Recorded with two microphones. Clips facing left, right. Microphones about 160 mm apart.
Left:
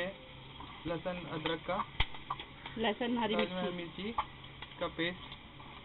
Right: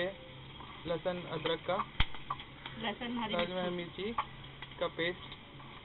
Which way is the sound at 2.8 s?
80° left.